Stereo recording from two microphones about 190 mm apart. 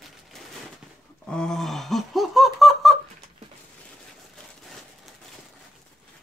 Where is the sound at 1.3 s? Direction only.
5° left (ahead or behind).